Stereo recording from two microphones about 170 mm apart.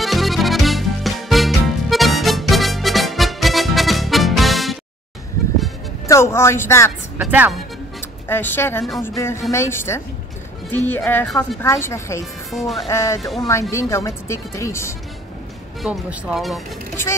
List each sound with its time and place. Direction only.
0.0 s music: centre (ahead or behind)
6.0 s speech: 15° left (ahead or behind)
7.2 s speech: 10° right (ahead or behind)
8.3 s speech: 10° left (ahead or behind)
11.6 s speech: 15° left (ahead or behind)
12.4 s speech: centre (ahead or behind)
12.8 s speech: 15° left (ahead or behind)
15.8 s speech: 5° right (ahead or behind)
16.9 s speech: 15° left (ahead or behind)